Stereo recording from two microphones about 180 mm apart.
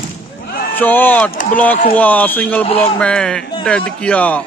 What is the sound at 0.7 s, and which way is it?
Speech, 10° left (ahead or behind).